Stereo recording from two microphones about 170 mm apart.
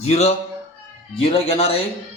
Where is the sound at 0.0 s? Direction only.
40° left (ahead or behind).